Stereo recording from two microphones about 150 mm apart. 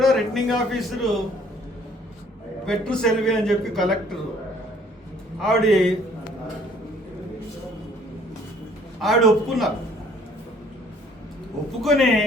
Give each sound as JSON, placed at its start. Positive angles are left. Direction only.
{"t": 0.0, "sound": "a man's voice", "side_deg": 0}
{"t": 2.6, "sound": "a man's voice", "side_deg": 5}
{"t": 5.4, "sound": "a man's voice", "side_deg": 5}
{"t": 9.0, "sound": "a man's voice", "side_deg": 0}
{"t": 11.8, "sound": "a man's voice", "side_deg": 0}